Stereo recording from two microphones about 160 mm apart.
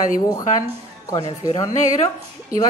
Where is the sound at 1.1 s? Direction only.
30° left (ahead or behind).